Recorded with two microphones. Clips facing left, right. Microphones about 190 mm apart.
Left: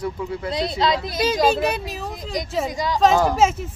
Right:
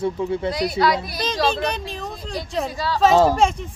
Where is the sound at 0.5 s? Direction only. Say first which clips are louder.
Left 2 dB; 25° left (ahead or behind).